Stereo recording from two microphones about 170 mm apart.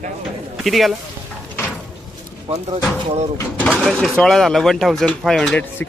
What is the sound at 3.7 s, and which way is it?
Speech, centre (ahead or behind).